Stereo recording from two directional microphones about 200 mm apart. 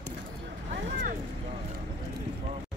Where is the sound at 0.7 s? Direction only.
40° right (ahead or behind).